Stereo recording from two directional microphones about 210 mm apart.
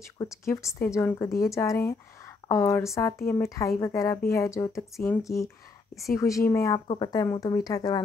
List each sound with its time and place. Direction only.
0.7 s a woman's voice: 10° left (ahead or behind)